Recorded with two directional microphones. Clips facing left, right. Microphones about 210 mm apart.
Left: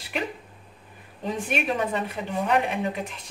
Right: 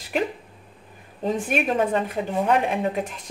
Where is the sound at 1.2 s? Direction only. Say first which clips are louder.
Right 4 dB; 50° right (ahead or behind).